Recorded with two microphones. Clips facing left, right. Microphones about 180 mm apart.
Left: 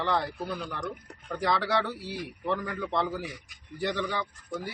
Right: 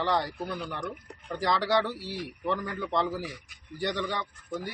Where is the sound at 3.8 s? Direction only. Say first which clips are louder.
Left 1 dB; centre (ahead or behind).